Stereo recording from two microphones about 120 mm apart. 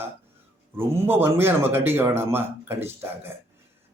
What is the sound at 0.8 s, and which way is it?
A man's voice, 20° right (ahead or behind).